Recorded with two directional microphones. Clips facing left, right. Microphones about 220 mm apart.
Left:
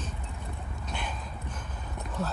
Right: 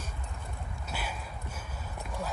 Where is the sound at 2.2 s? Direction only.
10° right (ahead or behind).